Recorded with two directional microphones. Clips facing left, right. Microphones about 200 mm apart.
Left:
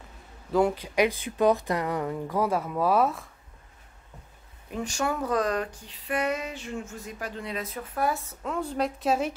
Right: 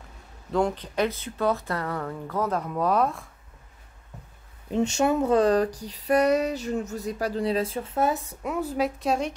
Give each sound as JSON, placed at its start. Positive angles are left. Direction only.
{"t": 0.5, "sound": "speech", "side_deg": 5}
{"t": 4.6, "sound": "speech", "side_deg": -25}